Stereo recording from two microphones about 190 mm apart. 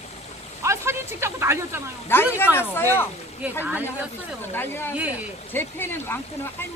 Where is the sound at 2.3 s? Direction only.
10° left (ahead or behind).